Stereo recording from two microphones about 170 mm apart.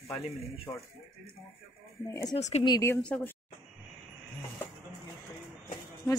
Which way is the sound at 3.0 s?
5° left (ahead or behind).